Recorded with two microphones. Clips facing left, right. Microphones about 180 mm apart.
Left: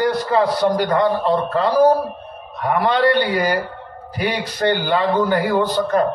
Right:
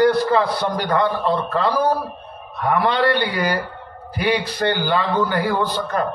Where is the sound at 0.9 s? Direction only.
45° left (ahead or behind).